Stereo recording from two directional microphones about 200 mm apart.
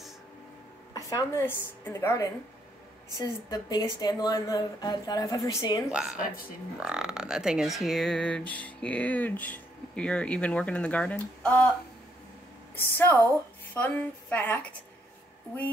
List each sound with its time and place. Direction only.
0.9 s a woman's voice: 15° left (ahead or behind)
5.9 s speech: 5° right (ahead or behind)
12.7 s a woman's voice: 10° left (ahead or behind)